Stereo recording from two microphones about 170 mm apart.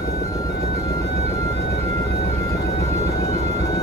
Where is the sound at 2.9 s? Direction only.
20° left (ahead or behind).